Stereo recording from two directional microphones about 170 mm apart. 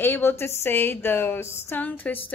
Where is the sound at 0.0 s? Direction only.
10° left (ahead or behind).